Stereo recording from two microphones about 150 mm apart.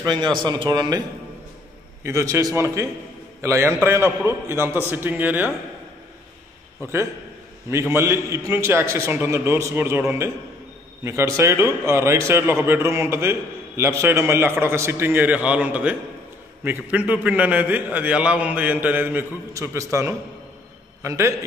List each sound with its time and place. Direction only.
0.0 s a man's voice: 30° right (ahead or behind)
2.0 s a man's voice: 20° right (ahead or behind)
7.9 s a man's voice: 15° right (ahead or behind)